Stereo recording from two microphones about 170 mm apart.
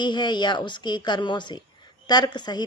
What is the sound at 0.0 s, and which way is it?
Speech, 25° left (ahead or behind).